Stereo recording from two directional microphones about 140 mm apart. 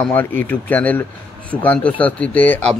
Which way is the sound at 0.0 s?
10° left (ahead or behind).